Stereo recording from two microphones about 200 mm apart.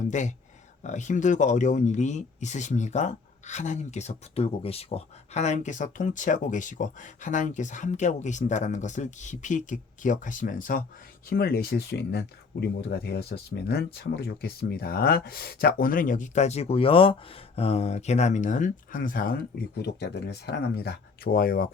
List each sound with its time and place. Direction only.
0.1 s speech: 35° left (ahead or behind)